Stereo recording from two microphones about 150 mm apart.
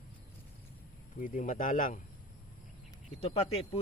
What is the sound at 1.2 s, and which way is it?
Speech, 65° left (ahead or behind).